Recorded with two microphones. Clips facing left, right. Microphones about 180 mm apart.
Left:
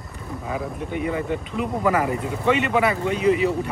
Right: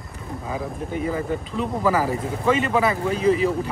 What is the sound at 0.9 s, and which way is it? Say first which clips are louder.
Speech: even; 35° right (ahead or behind).